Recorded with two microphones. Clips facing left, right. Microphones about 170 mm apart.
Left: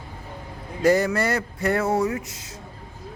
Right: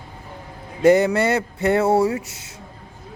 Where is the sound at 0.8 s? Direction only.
25° right (ahead or behind).